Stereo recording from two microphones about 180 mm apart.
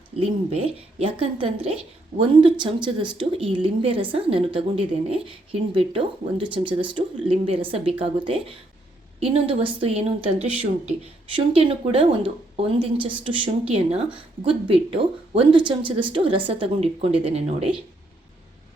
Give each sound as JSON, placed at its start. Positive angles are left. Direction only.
{"t": 0.2, "sound": "a woman's voice", "side_deg": -35}